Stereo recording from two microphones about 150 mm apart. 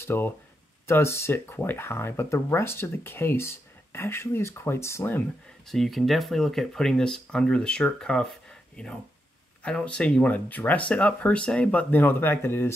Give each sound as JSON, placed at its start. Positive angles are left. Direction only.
{"t": 0.0, "sound": "speech", "side_deg": 15}
{"t": 5.7, "sound": "speech", "side_deg": 0}